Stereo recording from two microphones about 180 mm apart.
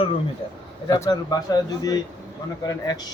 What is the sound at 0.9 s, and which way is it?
Speech, 20° left (ahead or behind).